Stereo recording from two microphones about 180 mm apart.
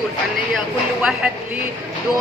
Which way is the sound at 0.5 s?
5° right (ahead or behind).